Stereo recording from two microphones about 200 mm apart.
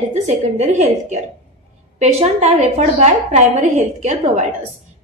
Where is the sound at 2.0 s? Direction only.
30° right (ahead or behind).